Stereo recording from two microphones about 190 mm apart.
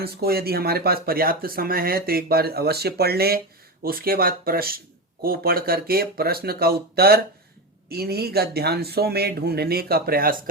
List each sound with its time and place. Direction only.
0.0 s speech: 55° right (ahead or behind)